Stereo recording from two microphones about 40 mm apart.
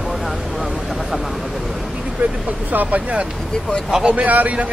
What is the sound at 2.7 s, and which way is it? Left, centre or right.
Speech, right.